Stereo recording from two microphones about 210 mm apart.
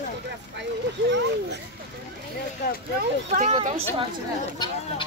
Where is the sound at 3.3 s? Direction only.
35° right (ahead or behind).